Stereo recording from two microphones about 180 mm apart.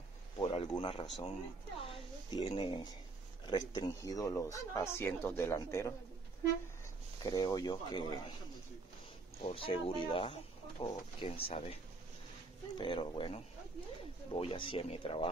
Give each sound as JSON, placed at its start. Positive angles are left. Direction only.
{"t": 0.4, "sound": "speech", "side_deg": 30}
{"t": 1.9, "sound": "a sound", "side_deg": 25}
{"t": 3.4, "sound": "speech", "side_deg": 25}
{"t": 7.2, "sound": "speech", "side_deg": 20}
{"t": 9.4, "sound": "speech", "side_deg": 30}
{"t": 12.7, "sound": "speech", "side_deg": 30}